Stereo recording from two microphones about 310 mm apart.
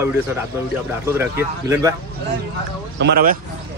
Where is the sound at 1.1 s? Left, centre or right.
Centre.